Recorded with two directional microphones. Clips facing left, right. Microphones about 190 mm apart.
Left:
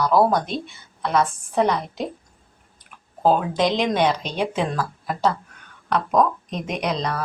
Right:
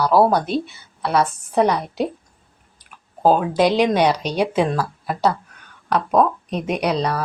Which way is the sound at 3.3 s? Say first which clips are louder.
Right 3 dB; 10° right (ahead or behind).